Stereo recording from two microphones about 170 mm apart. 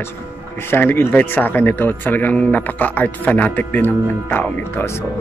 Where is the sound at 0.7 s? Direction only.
15° left (ahead or behind).